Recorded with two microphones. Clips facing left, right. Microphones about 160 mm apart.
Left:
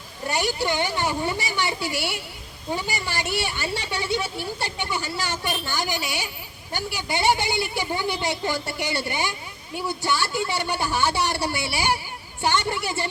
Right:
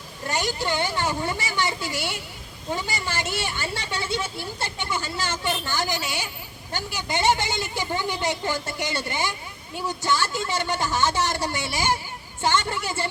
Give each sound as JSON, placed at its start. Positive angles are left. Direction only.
{"t": 0.3, "sound": "speech", "side_deg": 15}